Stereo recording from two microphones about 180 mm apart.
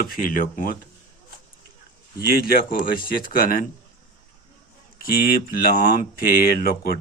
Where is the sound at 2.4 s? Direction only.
55° left (ahead or behind).